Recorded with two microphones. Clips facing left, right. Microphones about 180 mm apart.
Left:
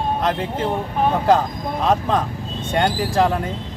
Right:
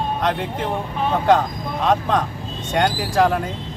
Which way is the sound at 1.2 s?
5° left (ahead or behind).